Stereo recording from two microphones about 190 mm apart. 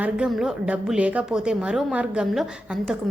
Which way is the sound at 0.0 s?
5° right (ahead or behind).